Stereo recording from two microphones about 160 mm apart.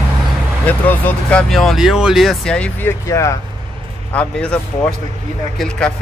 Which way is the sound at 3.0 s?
20° left (ahead or behind).